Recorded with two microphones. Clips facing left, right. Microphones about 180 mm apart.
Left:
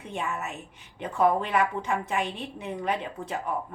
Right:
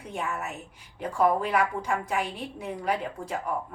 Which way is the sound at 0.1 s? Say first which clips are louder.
Even; 5° right (ahead or behind).